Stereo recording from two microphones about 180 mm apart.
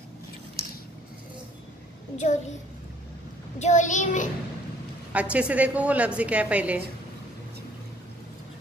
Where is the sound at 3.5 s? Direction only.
40° left (ahead or behind).